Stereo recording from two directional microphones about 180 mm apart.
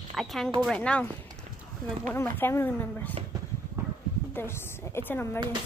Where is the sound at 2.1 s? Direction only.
10° left (ahead or behind).